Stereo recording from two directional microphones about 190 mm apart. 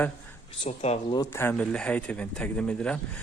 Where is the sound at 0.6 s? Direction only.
35° left (ahead or behind).